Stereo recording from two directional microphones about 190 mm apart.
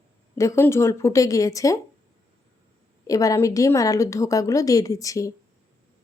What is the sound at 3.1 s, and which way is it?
A woman's voice, 20° left (ahead or behind).